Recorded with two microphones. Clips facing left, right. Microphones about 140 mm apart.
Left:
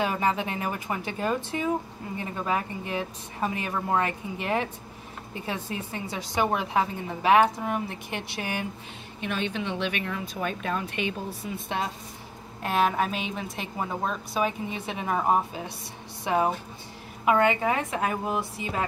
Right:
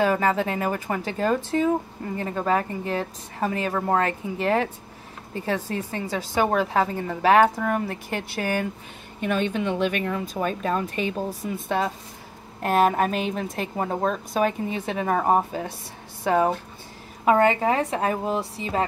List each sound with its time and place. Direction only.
0.0 s a woman's voice: 40° right (ahead or behind)
6.0 s a woman's voice: 15° left (ahead or behind)
6.4 s a woman's voice: 45° right (ahead or behind)
17.2 s speech: 35° right (ahead or behind)